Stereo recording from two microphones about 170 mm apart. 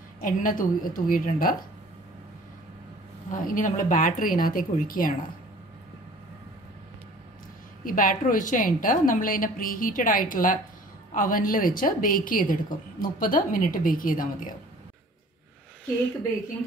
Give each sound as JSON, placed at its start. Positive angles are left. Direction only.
{"t": 0.2, "sound": "a woman's voice", "side_deg": 50}
{"t": 3.3, "sound": "a woman's voice", "side_deg": 50}
{"t": 7.8, "sound": "a woman's voice", "side_deg": 55}